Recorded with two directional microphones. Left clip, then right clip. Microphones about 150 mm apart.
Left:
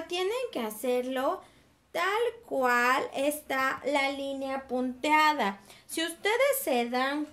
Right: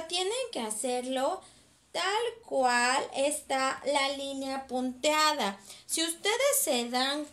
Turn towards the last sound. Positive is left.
turn(degrees=35)  # may be behind; listen again after turning